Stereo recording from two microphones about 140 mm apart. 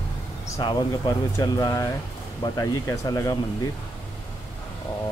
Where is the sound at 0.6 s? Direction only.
30° left (ahead or behind).